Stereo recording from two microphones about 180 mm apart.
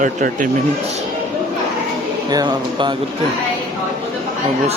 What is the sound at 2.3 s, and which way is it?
Speech, 25° right (ahead or behind).